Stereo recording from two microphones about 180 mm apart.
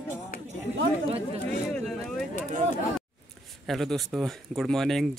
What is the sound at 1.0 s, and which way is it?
Speech, 35° right (ahead or behind).